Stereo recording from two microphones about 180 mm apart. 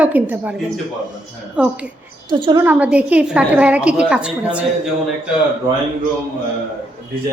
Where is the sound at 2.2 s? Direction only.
25° right (ahead or behind).